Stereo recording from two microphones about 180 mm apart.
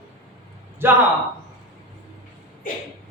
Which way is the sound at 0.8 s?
10° right (ahead or behind).